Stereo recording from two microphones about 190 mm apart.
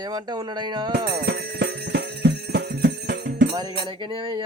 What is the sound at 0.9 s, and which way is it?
Music, 55° right (ahead or behind).